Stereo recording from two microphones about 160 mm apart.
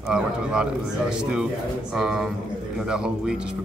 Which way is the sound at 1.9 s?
5° right (ahead or behind).